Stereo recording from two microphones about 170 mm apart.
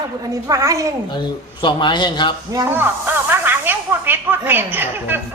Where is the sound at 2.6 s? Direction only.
10° right (ahead or behind).